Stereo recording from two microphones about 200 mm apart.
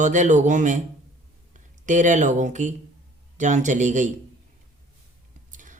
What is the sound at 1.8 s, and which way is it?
Speech, 40° right (ahead or behind).